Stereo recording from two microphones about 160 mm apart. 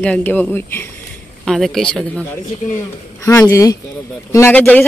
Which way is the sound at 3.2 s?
15° left (ahead or behind).